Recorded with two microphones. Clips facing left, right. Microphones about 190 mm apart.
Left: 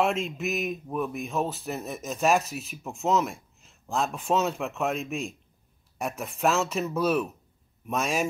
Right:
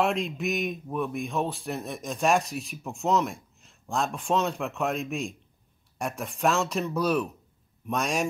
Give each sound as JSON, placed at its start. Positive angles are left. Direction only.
{"t": 0.0, "sound": "speech", "side_deg": 0}